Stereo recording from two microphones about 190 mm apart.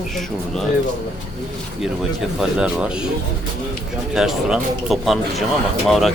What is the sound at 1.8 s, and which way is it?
Speech, centre (ahead or behind).